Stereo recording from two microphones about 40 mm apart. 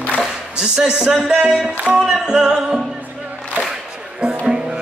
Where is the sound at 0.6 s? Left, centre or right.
Centre.